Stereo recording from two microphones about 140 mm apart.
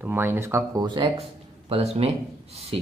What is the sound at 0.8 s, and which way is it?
A woman's voice, 35° right (ahead or behind).